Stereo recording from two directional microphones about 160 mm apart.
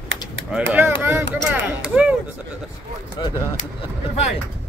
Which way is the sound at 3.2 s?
30° left (ahead or behind).